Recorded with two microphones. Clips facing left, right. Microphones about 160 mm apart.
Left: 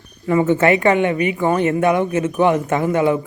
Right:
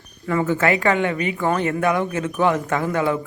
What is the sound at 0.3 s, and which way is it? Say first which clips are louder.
Speech: left 5 dB; 20° left (ahead or behind).